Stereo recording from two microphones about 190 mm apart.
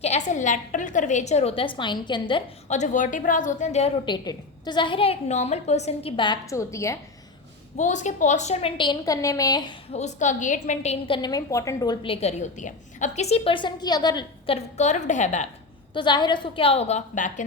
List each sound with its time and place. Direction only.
0.0 s a woman's voice: 40° left (ahead or behind)
2.6 s a woman's voice: 40° left (ahead or behind); by 7.0 s 15° left (ahead or behind)
7.8 s a woman's voice: 40° left (ahead or behind); by 9.7 s 20° left (ahead or behind)
9.9 s a woman's voice: 35° left (ahead or behind); by 11.9 s 15° left (ahead or behind)
12.0 s a woman's voice: 30° left (ahead or behind)
16.0 s a woman's voice: 25° left (ahead or behind); by 17.4 s 40° left (ahead or behind)